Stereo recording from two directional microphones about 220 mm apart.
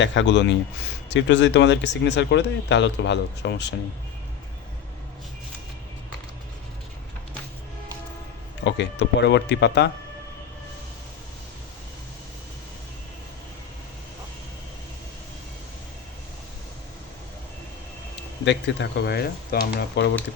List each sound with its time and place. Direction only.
0.0 s speech: 55° left (ahead or behind)
8.6 s speech: 55° left (ahead or behind)
18.4 s speech: 55° left (ahead or behind)